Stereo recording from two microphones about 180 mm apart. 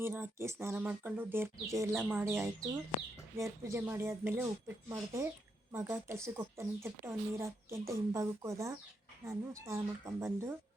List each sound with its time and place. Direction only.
0.0 s a woman's voice: 15° right (ahead or behind)